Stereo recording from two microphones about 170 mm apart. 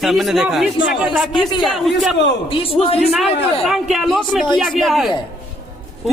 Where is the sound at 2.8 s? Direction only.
35° left (ahead or behind).